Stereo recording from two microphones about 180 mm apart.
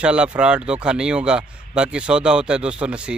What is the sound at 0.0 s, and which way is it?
Speech, 5° right (ahead or behind).